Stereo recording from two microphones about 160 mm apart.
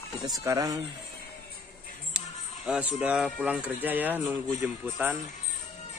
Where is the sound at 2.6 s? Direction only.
5° right (ahead or behind).